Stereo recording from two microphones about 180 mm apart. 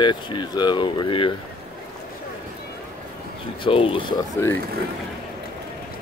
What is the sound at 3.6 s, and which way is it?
Speech, 30° left (ahead or behind).